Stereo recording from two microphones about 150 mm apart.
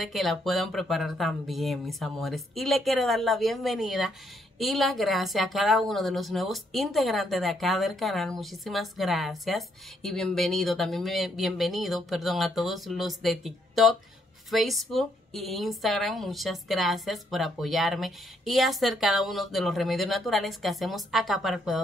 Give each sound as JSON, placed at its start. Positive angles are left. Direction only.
{"t": 0.0, "sound": "a woman's voice", "side_deg": 0}